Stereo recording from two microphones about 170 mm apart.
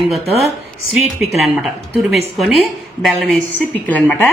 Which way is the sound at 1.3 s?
Centre (ahead or behind).